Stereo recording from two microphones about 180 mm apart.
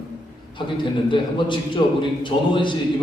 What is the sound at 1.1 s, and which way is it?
A man's voice, 25° left (ahead or behind).